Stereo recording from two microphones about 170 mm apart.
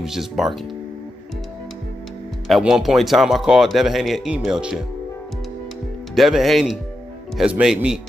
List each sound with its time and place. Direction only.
0.0 s speech: centre (ahead or behind)
2.4 s speech: centre (ahead or behind)
6.1 s speech: centre (ahead or behind)